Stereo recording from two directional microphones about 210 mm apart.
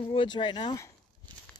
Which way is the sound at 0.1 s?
25° left (ahead or behind).